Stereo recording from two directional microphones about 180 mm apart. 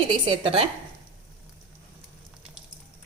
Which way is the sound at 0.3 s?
30° right (ahead or behind).